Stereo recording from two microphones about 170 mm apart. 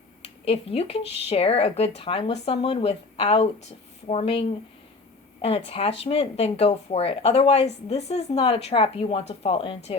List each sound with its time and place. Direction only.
0.4 s speech: 35° left (ahead or behind)